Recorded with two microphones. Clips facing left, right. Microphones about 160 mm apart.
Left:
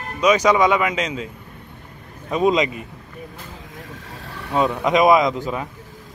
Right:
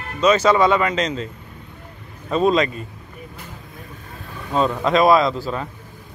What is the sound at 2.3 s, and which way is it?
Speech, 15° left (ahead or behind).